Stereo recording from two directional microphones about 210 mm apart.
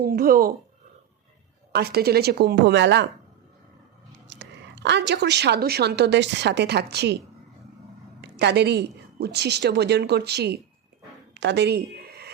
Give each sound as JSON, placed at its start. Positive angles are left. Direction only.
{"t": 0.0, "sound": "a woman's voice", "side_deg": -45}
{"t": 1.7, "sound": "a woman's voice", "side_deg": -50}
{"t": 4.3, "sound": "a woman's voice", "side_deg": -60}
{"t": 8.2, "sound": "a woman's voice", "side_deg": -55}
{"t": 11.3, "sound": "a sound", "side_deg": -55}